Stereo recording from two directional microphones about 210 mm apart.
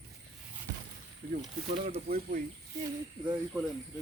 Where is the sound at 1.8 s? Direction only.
30° right (ahead or behind).